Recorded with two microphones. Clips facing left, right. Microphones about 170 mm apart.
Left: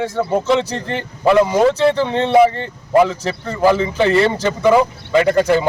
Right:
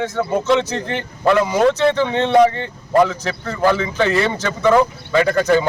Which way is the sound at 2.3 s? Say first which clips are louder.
Left 1 dB; 5° left (ahead or behind).